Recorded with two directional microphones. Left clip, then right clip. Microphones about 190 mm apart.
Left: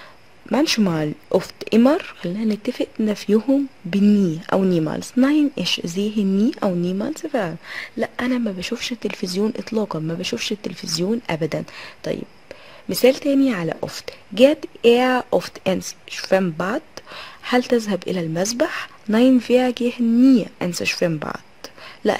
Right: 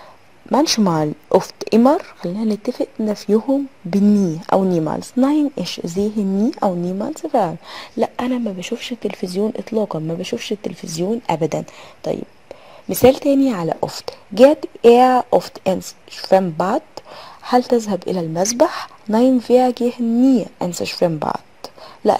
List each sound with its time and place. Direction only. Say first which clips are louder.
0.6 s speech: right 4 dB; 5° right (ahead or behind)
7.7 s a woman's voice: right 4 dB; 15° right (ahead or behind)
8.2 s a woman's voice: right 1 dB; centre (ahead or behind)